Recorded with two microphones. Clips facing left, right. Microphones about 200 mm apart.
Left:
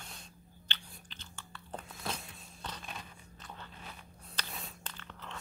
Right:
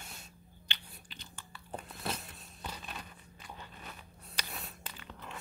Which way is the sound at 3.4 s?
10° right (ahead or behind).